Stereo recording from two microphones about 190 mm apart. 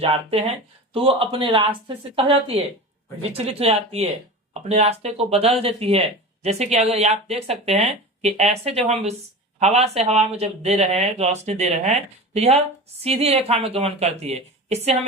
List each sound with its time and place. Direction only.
0.0 s speech: 30° right (ahead or behind)